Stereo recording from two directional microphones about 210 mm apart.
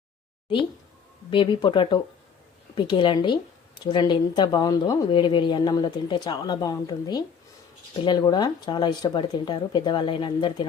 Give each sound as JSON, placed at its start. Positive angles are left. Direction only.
{"t": 1.3, "sound": "a woman's voice", "side_deg": 25}